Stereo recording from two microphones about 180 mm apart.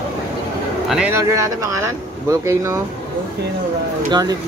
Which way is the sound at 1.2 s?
15° right (ahead or behind).